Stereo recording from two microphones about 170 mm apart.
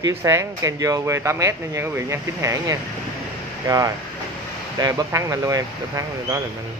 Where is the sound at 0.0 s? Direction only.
15° right (ahead or behind).